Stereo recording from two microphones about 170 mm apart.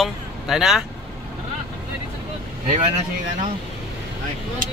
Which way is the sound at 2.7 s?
35° right (ahead or behind).